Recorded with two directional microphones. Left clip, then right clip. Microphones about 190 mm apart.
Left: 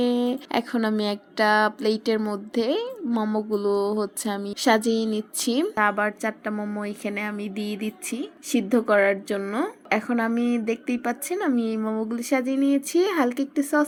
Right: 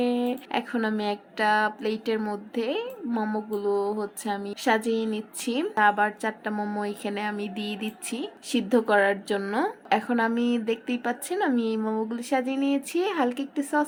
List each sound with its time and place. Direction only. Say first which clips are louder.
0.0 s speech: left 2 dB; 30° left (ahead or behind)
5.7 s a woman's voice: right 4 dB; 15° left (ahead or behind)